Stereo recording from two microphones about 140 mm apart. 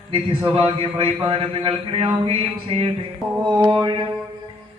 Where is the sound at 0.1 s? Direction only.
40° right (ahead or behind).